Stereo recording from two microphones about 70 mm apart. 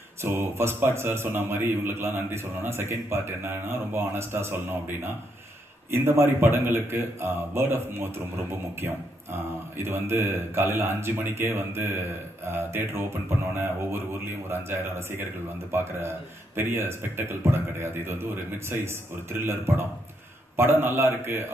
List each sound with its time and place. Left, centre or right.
0.2 s a man's voice: right
9.8 s a man's voice: right